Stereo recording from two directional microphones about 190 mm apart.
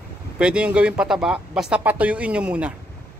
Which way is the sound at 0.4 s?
5° right (ahead or behind).